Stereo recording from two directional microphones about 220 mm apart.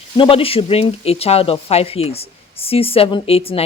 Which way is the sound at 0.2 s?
25° left (ahead or behind).